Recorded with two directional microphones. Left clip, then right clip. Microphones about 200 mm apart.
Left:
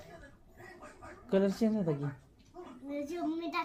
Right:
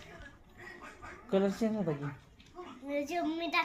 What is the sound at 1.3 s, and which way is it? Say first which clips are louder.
Speech: left 1 dB; 55° left (ahead or behind).